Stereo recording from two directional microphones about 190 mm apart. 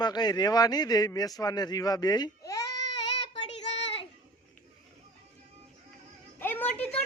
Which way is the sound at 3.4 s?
35° left (ahead or behind).